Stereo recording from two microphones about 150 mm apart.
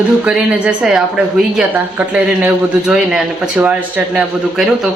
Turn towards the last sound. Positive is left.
turn(degrees=0)  # may be behind; listen again after turning